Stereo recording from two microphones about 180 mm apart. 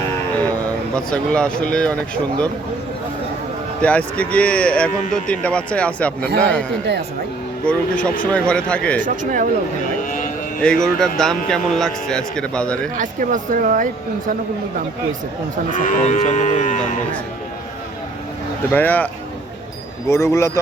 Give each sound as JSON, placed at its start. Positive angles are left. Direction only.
{"t": 0.9, "sound": "speech", "side_deg": 5}
{"t": 3.8, "sound": "speech", "side_deg": 5}
{"t": 9.0, "sound": "speech", "side_deg": -50}
{"t": 10.6, "sound": "speech", "side_deg": 5}
{"t": 13.0, "sound": "speech", "side_deg": -45}
{"t": 15.8, "sound": "moo", "side_deg": 45}
{"t": 18.7, "sound": "speech", "side_deg": 10}
{"t": 20.1, "sound": "speech", "side_deg": 15}